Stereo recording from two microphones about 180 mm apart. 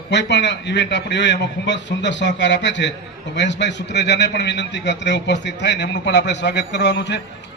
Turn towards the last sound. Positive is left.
turn(degrees=75)  # may be behind; listen again after turning